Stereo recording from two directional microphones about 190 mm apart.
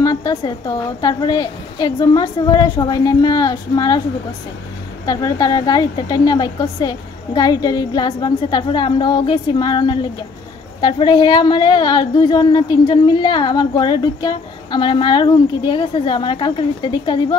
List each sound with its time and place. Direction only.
0.0 s speech: 20° left (ahead or behind)
5.0 s speech: 20° left (ahead or behind)